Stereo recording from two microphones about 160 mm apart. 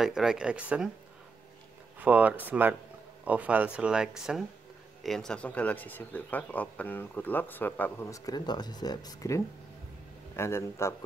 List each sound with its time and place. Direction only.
0.0 s speech: centre (ahead or behind)
2.0 s speech: 10° right (ahead or behind); by 11.1 s 15° left (ahead or behind)